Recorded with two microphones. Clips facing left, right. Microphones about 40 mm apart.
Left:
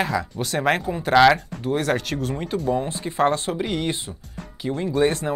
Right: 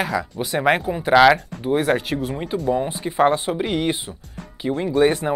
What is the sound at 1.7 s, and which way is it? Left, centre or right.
Speech, centre.